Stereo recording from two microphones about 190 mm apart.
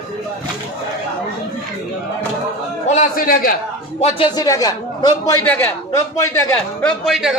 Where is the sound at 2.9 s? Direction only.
45° left (ahead or behind).